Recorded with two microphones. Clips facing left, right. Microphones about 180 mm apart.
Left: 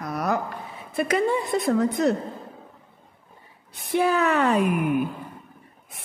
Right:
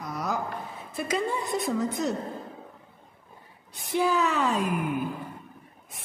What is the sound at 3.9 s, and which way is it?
A woman's voice, 60° left (ahead or behind).